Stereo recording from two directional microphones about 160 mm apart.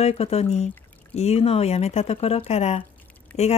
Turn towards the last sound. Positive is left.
turn(degrees=40)  # may be behind; listen again after turning